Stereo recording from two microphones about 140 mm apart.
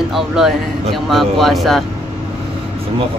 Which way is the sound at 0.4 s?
5° right (ahead or behind).